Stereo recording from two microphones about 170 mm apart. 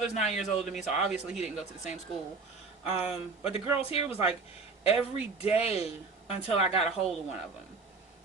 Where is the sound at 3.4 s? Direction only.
30° left (ahead or behind).